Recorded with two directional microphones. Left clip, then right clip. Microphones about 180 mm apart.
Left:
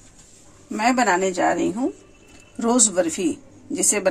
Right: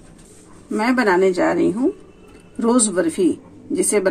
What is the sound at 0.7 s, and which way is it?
A woman's voice, 15° left (ahead or behind).